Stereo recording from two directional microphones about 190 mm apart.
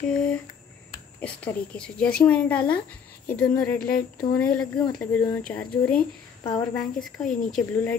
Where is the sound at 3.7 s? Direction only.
50° left (ahead or behind).